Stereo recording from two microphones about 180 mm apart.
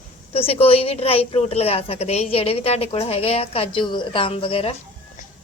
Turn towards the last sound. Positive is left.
turn(degrees=30)  # may be behind; listen again after turning